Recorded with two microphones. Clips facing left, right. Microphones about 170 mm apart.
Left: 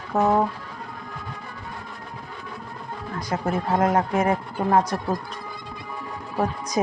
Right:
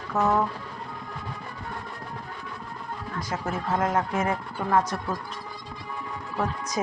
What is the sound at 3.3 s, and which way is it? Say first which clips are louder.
Speech: left 5 dB; 35° left (ahead or behind).